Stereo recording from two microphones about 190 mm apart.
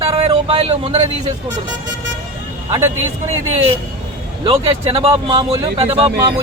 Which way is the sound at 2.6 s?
15° right (ahead or behind).